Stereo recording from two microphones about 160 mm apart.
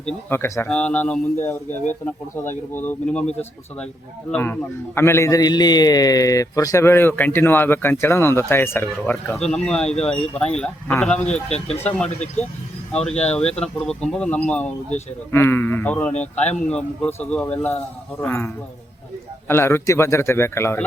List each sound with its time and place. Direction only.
0.0 s a man's voice: 10° left (ahead or behind)
4.3 s a man's voice: 10° left (ahead or behind)
9.4 s a man's voice: 5° left (ahead or behind)